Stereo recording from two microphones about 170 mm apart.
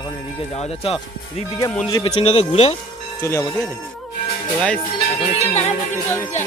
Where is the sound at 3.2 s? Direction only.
20° left (ahead or behind).